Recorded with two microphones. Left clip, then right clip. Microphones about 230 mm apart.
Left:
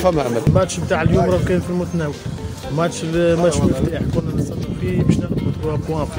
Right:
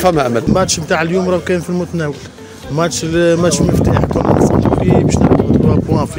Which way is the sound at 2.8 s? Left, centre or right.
Right.